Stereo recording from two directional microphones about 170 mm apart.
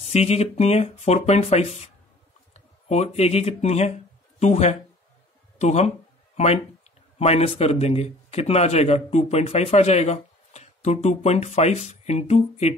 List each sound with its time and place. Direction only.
0.0 s speech: 40° left (ahead or behind)